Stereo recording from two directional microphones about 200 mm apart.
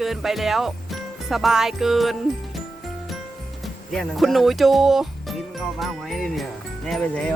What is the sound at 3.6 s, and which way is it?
Speech, centre (ahead or behind).